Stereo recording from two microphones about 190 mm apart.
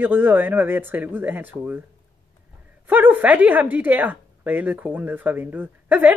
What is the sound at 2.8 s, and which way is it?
Speech, 10° right (ahead or behind).